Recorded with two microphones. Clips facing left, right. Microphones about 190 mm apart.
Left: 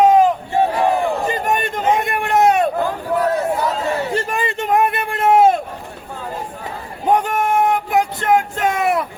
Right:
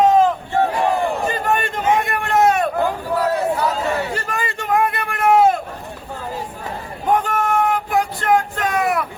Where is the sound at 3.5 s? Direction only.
20° left (ahead or behind).